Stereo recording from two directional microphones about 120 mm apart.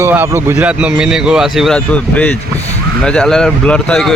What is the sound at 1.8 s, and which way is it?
Speech, 10° left (ahead or behind).